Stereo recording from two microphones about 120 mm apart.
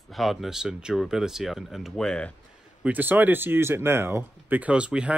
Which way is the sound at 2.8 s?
15° right (ahead or behind).